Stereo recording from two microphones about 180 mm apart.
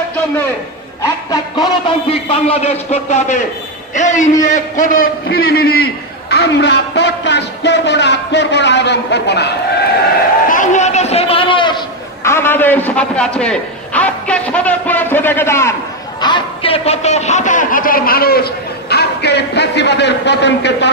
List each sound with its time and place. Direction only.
1.3 s a man's voice: 30° left (ahead or behind); by 9.5 s 70° left (ahead or behind)
10.5 s a sound: 45° left (ahead or behind); by 11.8 s 25° left (ahead or behind)
12.2 s a man's voice: 15° left (ahead or behind)
16.2 s a man's voice: 25° left (ahead or behind); by 20.9 s 75° left (ahead or behind)